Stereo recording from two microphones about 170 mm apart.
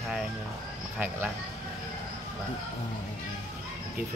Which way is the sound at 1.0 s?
10° right (ahead or behind).